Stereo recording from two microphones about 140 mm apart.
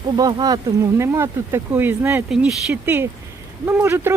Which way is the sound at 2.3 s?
5° right (ahead or behind).